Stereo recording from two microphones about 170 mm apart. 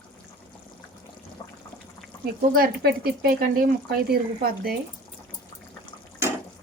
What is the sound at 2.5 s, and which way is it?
Speech, 60° right (ahead or behind).